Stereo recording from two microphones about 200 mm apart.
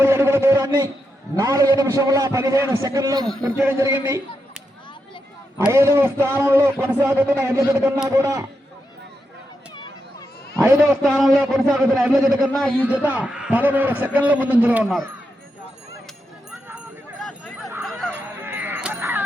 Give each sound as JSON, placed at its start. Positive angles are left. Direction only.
{"t": 0.0, "sound": "a sound", "side_deg": -10}
{"t": 1.4, "sound": "a man's voice", "side_deg": -15}
{"t": 4.0, "sound": "a sound", "side_deg": -10}
{"t": 5.5, "sound": "a man's voice", "side_deg": -10}
{"t": 8.1, "sound": "a man's voice", "side_deg": -15}
{"t": 10.6, "sound": "a man's voice", "side_deg": -15}
{"t": 11.0, "sound": "a man's voice", "side_deg": 0}
{"t": 16.5, "sound": "a sound", "side_deg": -5}
{"t": 17.8, "sound": "honk", "side_deg": 0}
{"t": 18.1, "sound": "honk", "side_deg": -10}